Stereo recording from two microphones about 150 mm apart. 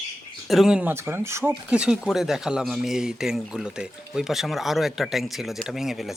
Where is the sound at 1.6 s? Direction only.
5° right (ahead or behind).